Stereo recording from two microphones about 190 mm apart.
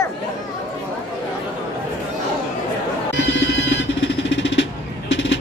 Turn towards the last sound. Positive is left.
turn(degrees=75)  # may be behind; listen again after turning